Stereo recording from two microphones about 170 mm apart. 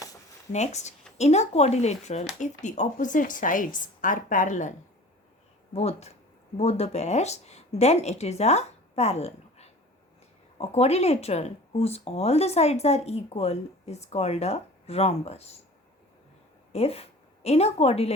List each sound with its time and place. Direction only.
0.5 s a woman's voice: 40° left (ahead or behind)
5.7 s speech: 40° left (ahead or behind)
16.7 s a woman's voice: 35° left (ahead or behind)